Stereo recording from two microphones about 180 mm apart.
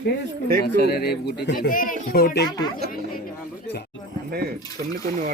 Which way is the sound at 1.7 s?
50° left (ahead or behind).